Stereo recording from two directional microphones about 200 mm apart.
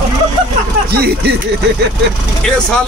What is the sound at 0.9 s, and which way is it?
Speech, 55° right (ahead or behind).